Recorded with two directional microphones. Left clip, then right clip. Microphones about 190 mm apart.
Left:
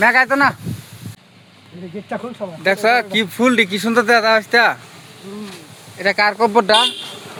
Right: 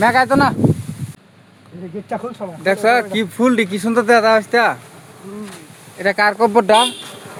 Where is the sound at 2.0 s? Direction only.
40° right (ahead or behind).